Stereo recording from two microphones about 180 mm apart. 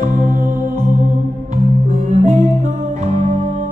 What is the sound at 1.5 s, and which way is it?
Music, 45° right (ahead or behind).